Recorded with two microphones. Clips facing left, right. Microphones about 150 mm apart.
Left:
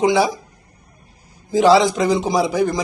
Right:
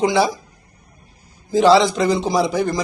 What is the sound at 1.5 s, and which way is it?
Speech, 10° left (ahead or behind).